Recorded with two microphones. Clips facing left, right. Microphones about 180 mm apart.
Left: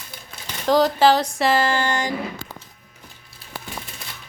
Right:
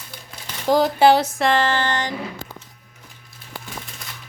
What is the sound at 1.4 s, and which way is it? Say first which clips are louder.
Speech: even; 5° left (ahead or behind).